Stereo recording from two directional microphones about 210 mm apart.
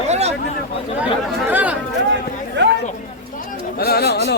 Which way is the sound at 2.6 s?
55° right (ahead or behind).